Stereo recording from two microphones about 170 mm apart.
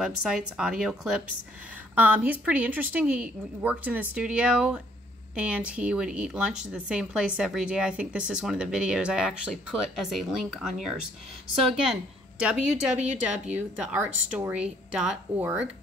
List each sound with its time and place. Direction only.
0.0 s a woman's voice: 5° right (ahead or behind)